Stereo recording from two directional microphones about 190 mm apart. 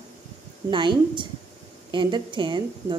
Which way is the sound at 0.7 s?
25° right (ahead or behind).